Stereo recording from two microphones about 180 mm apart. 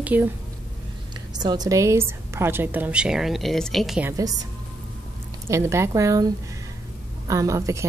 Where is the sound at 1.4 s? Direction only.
20° right (ahead or behind); by 4.1 s centre (ahead or behind).